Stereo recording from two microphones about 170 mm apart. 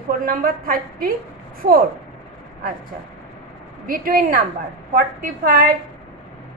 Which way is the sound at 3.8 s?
55° right (ahead or behind).